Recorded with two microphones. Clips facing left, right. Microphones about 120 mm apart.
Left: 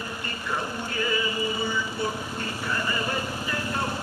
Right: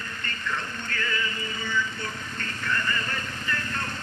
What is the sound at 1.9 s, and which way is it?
Vehicle, 10° left (ahead or behind).